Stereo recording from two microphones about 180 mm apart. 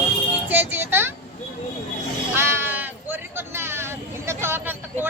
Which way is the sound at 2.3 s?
10° right (ahead or behind).